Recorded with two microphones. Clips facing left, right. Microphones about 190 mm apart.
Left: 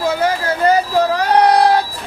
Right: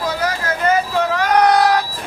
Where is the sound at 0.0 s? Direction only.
30° left (ahead or behind).